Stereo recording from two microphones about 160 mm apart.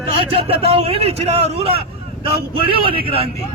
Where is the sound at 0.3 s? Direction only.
35° right (ahead or behind).